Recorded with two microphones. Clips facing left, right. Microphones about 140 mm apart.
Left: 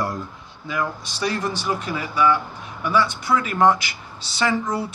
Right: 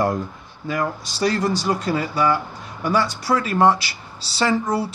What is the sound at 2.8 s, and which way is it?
Speech, 40° right (ahead or behind).